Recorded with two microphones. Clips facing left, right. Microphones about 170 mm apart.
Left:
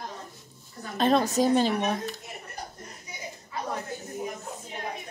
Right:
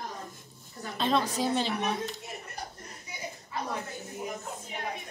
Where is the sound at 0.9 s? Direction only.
45° left (ahead or behind).